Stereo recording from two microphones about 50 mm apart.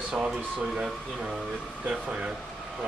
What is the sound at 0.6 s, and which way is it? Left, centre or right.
Speech, centre.